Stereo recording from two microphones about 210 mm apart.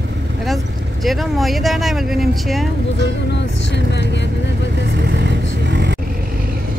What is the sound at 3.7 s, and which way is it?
Vehicle, 55° left (ahead or behind).